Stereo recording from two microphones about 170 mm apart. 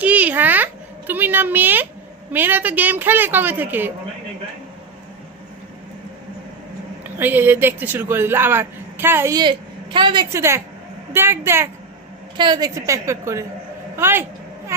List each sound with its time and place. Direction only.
0.0 s a sound: 10° right (ahead or behind)
2.3 s a woman's voice: 10° right (ahead or behind)
7.0 s a man's voice: 10° right (ahead or behind); by 10.2 s 30° right (ahead or behind)
10.3 s a woman's voice: 15° right (ahead or behind)
12.4 s a woman's voice: 25° right (ahead or behind)